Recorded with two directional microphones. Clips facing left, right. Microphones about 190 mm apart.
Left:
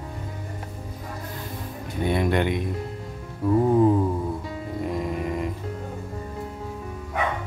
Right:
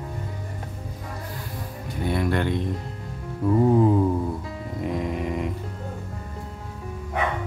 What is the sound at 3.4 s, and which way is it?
Music, centre (ahead or behind).